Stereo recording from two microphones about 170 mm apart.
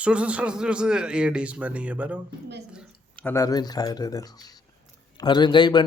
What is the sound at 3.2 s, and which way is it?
Speech, 20° left (ahead or behind).